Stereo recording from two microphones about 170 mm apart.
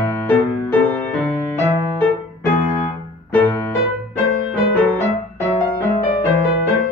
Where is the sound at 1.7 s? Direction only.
20° right (ahead or behind).